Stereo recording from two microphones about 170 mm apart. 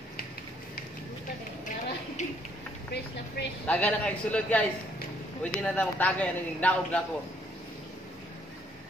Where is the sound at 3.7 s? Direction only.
10° left (ahead or behind).